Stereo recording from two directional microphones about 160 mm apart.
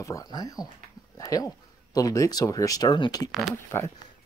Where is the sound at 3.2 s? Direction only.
Centre (ahead or behind).